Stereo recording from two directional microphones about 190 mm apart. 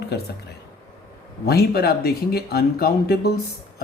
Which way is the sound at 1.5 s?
55° left (ahead or behind).